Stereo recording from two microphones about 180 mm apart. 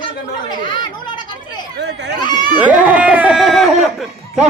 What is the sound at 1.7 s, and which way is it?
Speech, 70° right (ahead or behind).